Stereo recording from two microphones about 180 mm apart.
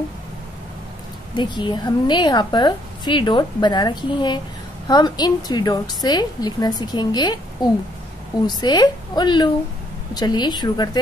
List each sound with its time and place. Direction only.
1.3 s a woman's voice: 25° left (ahead or behind)